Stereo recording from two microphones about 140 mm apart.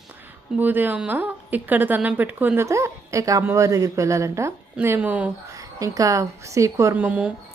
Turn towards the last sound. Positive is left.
turn(degrees=-10)  # may be behind; listen again after turning